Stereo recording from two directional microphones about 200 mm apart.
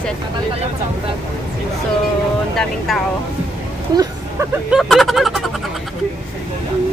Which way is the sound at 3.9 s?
20° right (ahead or behind).